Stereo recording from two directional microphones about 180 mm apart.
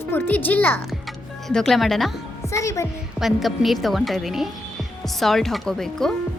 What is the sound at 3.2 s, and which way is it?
Speech, centre (ahead or behind).